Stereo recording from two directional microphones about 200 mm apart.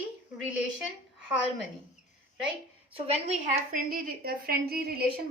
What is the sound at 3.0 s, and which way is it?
A woman's voice, 35° right (ahead or behind).